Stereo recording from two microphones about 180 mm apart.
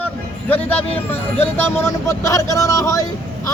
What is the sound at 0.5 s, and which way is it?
Speech, 10° left (ahead or behind).